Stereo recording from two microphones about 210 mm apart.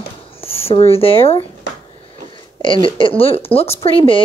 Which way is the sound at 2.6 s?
25° left (ahead or behind).